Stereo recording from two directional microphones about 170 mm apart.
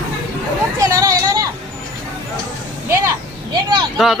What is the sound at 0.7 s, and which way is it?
Speech, 20° right (ahead or behind).